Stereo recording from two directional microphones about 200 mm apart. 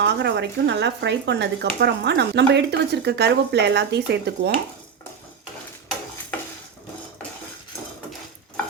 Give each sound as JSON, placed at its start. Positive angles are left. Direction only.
{"t": 0.0, "sound": "speech", "side_deg": -60}